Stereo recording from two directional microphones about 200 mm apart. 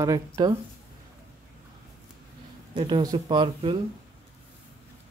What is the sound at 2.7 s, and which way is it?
Speech, 25° right (ahead or behind).